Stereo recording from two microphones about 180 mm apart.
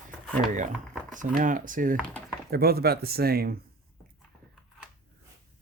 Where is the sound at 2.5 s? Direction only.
60° right (ahead or behind).